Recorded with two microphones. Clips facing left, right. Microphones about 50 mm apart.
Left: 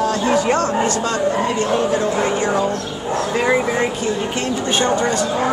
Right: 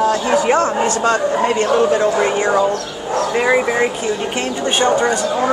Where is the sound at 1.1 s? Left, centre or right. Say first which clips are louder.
Right 3 dB; right; by 3.8 s centre.